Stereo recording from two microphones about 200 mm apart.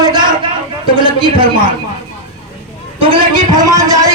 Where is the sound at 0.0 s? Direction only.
20° right (ahead or behind).